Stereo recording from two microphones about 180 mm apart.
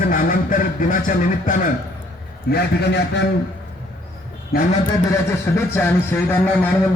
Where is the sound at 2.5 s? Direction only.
65° left (ahead or behind).